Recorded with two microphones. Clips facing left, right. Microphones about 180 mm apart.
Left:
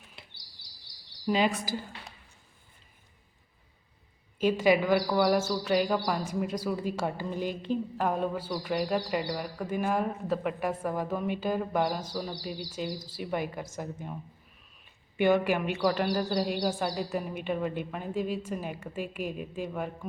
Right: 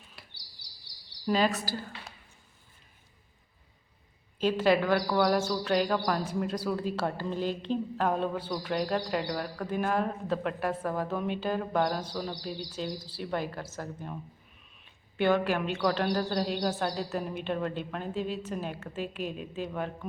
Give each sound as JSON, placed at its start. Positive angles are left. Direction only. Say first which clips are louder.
{"t": 0.2, "sound": "a sound", "louder": "left 1 dB", "side_deg": 25}
{"t": 1.3, "sound": "a woman's voice", "louder": "even", "side_deg": 15}
{"t": 4.4, "sound": "a woman's voice", "louder": "left 1 dB", "side_deg": 10}